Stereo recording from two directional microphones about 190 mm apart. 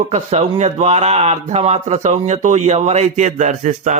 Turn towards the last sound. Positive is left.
turn(degrees=-40)  # may be behind; listen again after turning